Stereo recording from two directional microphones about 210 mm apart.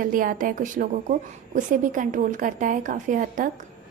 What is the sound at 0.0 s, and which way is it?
A woman's voice, 40° right (ahead or behind).